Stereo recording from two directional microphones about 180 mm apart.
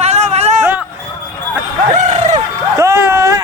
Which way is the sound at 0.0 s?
35° right (ahead or behind).